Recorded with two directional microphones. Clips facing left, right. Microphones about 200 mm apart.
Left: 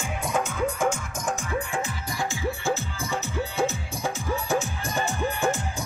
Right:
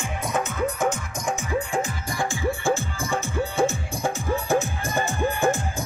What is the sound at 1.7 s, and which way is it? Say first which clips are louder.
Music: right 3 dB; 50° right (ahead or behind).